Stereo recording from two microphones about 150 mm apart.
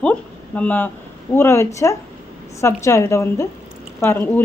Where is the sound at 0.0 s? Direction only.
10° left (ahead or behind).